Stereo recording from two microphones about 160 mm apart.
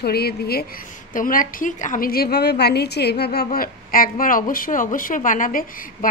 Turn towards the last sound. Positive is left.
turn(degrees=60)  # may be behind; listen again after turning